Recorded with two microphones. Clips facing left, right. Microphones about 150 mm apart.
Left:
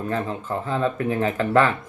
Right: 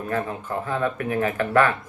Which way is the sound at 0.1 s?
25° left (ahead or behind).